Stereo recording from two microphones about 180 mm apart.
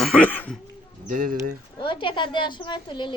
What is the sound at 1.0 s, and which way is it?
Speech, 50° right (ahead or behind).